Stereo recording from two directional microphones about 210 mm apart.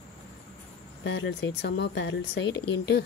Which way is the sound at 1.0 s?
60° left (ahead or behind).